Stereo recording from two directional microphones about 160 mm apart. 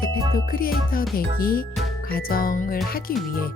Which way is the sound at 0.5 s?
65° left (ahead or behind).